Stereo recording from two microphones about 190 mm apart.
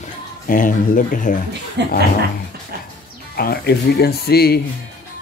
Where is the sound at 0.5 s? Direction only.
45° left (ahead or behind).